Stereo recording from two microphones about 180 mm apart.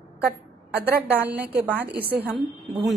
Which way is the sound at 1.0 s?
10° right (ahead or behind).